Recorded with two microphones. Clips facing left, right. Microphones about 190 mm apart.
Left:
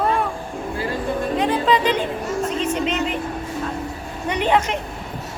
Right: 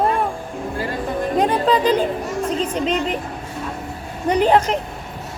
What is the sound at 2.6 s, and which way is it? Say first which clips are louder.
Music: right 1 dB; 35° right (ahead or behind).